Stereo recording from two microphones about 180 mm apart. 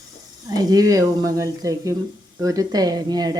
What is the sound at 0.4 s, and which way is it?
Speech, 20° right (ahead or behind).